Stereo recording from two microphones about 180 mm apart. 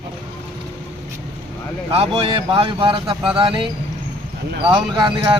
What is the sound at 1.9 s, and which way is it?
Speech, 30° right (ahead or behind).